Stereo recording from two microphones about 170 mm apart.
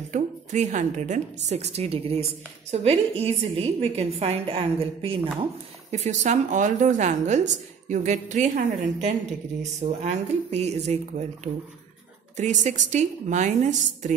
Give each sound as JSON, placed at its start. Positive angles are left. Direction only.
{"t": 0.1, "sound": "a woman's voice", "side_deg": -45}